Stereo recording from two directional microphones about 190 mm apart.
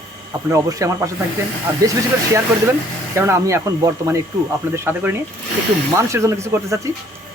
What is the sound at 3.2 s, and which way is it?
Speech, 15° right (ahead or behind).